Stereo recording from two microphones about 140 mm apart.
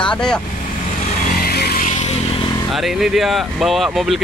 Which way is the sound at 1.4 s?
90° left.